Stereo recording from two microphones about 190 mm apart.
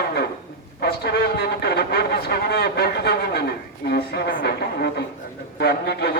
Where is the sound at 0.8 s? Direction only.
55° left (ahead or behind).